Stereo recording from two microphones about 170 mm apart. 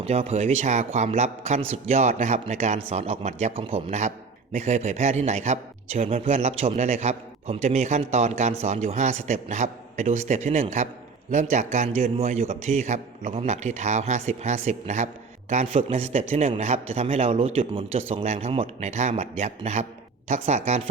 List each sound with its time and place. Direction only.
0.0 s a man's voice: 35° right (ahead or behind)